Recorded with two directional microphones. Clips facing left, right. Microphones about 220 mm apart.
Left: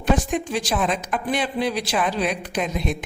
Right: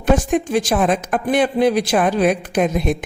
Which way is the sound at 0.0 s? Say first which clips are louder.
Right 5 dB; 50° right (ahead or behind).